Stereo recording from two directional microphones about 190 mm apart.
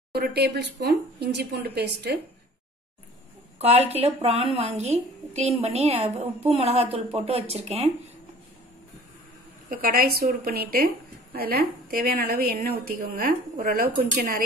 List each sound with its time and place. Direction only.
0.1 s speech: 55° right (ahead or behind)
3.5 s speech: 35° right (ahead or behind)
9.7 s a woman's voice: 50° right (ahead or behind)